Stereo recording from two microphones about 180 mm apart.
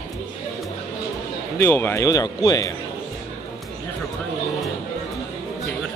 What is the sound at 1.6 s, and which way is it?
Speech, 10° left (ahead or behind).